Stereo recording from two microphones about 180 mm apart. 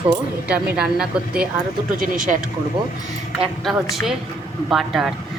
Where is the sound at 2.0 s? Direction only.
45° right (ahead or behind).